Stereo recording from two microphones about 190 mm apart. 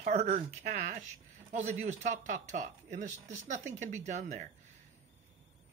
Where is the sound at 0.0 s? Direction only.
40° right (ahead or behind).